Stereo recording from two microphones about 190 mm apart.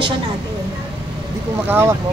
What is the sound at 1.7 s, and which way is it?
Speech, 15° right (ahead or behind).